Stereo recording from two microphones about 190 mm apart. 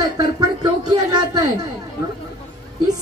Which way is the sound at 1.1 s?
20° right (ahead or behind).